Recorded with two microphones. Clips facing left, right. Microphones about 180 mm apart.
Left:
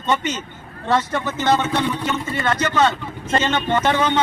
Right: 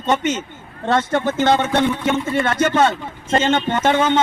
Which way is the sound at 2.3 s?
50° right (ahead or behind).